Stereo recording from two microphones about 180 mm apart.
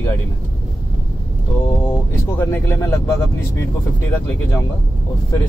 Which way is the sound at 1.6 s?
15° left (ahead or behind).